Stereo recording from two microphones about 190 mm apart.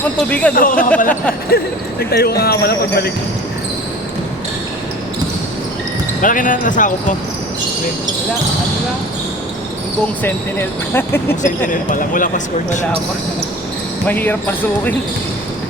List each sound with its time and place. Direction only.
0.3 s speech: 5° left (ahead or behind)
0.5 s speech: 45° left (ahead or behind)
6.2 s speech: 45° left (ahead or behind)
10.2 s speech: 10° left (ahead or behind)
11.4 s speech: 45° left (ahead or behind)
14.1 s speech: 10° left (ahead or behind)